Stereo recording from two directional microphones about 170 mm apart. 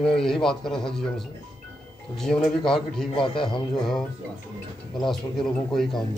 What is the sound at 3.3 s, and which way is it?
Speech, 30° left (ahead or behind).